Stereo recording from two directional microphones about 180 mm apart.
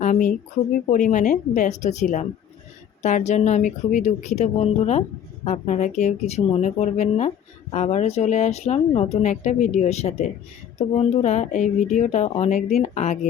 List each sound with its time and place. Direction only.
0.0 s a woman's voice: 45° left (ahead or behind)